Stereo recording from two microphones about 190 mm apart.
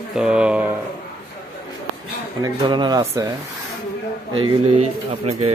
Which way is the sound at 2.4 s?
25° right (ahead or behind).